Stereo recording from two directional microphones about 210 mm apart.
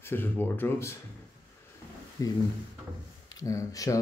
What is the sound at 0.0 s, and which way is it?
Speech, 10° left (ahead or behind).